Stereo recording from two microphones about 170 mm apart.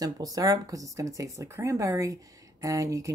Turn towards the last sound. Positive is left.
turn(degrees=-20)  # may be behind; listen again after turning